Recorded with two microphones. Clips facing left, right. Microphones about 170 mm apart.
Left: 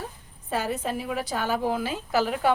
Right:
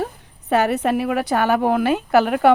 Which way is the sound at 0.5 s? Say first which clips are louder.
Right 10 dB; 70° right (ahead or behind).